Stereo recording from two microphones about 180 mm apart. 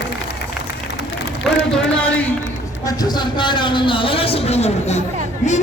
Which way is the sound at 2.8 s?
20° left (ahead or behind).